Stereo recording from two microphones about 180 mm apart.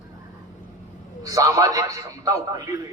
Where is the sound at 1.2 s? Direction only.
20° right (ahead or behind).